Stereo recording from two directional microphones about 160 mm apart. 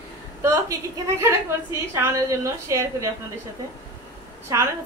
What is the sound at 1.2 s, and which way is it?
A woman's voice, 15° right (ahead or behind).